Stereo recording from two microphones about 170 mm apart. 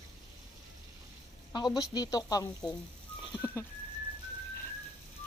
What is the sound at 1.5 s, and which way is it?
Speech, 25° left (ahead or behind).